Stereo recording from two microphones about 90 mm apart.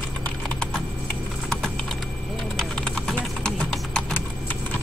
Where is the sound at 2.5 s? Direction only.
5° left (ahead or behind).